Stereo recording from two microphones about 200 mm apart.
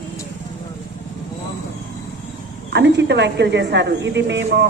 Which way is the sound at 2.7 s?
60° right (ahead or behind).